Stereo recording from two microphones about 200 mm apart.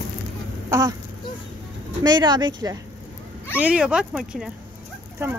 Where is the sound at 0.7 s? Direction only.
15° right (ahead or behind).